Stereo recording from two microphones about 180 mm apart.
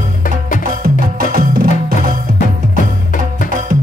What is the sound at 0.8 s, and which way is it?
Music, 55° right (ahead or behind).